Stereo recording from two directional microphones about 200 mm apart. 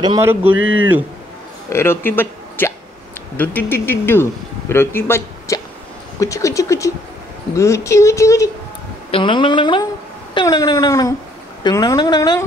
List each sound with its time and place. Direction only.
0.0 s speech: 20° right (ahead or behind)
0.3 s speech: 10° right (ahead or behind)
0.6 s a man's voice: 80° right
1.7 s speech: 10° left (ahead or behind)